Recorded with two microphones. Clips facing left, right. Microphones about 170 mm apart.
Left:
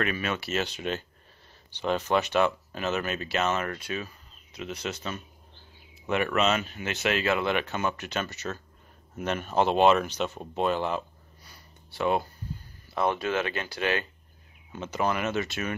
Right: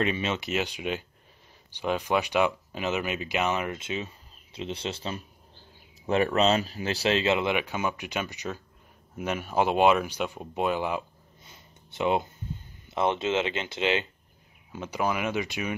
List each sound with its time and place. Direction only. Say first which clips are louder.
0.0 s speech: right 2 dB; 25° right (ahead or behind)
11.4 s a sound: right 1 dB; 20° right (ahead or behind)
12.8 s speech: right 1 dB; 20° right (ahead or behind)
14.7 s speech: even; 10° right (ahead or behind)